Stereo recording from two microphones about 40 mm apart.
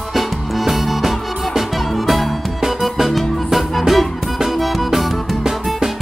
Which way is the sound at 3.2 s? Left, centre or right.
Centre.